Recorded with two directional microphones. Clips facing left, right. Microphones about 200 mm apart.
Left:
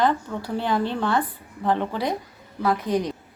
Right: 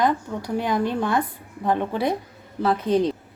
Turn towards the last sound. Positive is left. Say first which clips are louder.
# right 3 dB
turn(degrees=-25)  # may be behind; listen again after turning